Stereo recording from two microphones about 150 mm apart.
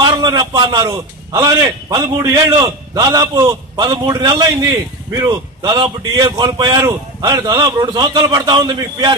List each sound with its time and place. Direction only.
0.0 s a man's voice: 30° right (ahead or behind)